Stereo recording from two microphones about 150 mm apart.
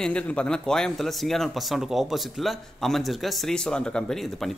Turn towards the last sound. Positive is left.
turn(degrees=5)  # may be behind; listen again after turning